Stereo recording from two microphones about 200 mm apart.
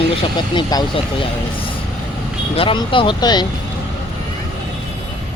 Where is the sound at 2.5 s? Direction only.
25° left (ahead or behind).